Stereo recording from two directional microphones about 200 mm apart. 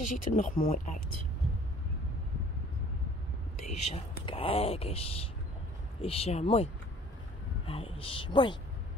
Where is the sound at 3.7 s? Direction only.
30° left (ahead or behind).